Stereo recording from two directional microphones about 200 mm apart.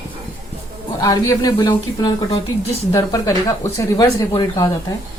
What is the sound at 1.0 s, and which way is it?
Speech, 15° left (ahead or behind).